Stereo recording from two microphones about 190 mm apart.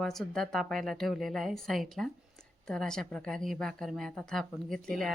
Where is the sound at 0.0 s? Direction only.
Centre (ahead or behind).